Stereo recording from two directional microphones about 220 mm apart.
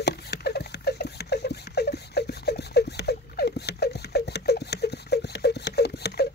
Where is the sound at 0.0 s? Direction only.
45° left (ahead or behind).